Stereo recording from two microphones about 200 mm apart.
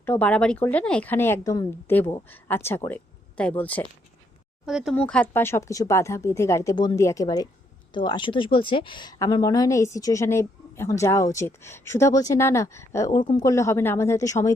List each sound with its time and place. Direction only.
0.0 s a woman's voice: 10° left (ahead or behind)
4.6 s a woman's voice: centre (ahead or behind); by 14.5 s 15° left (ahead or behind)